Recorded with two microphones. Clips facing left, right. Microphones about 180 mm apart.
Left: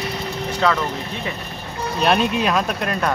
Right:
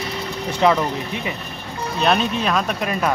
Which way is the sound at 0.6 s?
20° right (ahead or behind).